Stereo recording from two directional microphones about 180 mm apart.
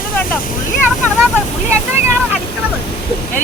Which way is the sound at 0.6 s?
45° left (ahead or behind).